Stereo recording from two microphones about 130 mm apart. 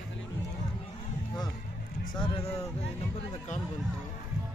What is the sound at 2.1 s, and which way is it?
Speech, 35° left (ahead or behind).